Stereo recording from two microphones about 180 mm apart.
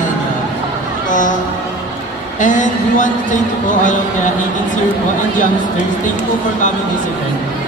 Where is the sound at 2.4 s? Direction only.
45° left (ahead or behind).